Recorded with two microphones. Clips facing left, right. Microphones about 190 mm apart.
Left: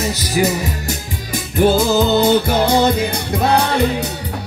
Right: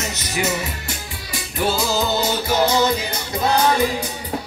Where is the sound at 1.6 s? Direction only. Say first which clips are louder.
Left 7 dB; 55° left (ahead or behind).